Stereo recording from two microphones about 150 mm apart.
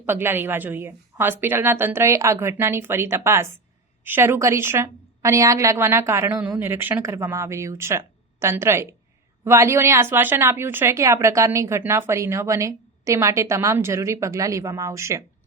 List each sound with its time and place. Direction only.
0.0 s a woman's voice: 15° right (ahead or behind)